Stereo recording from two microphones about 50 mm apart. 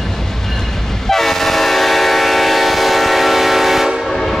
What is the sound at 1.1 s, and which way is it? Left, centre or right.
Train, centre.